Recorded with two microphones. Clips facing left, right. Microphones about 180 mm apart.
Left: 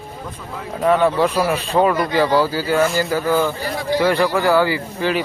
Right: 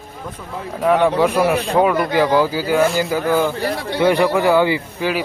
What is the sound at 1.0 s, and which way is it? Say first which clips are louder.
Speech: right 2 dB; 15° right (ahead or behind).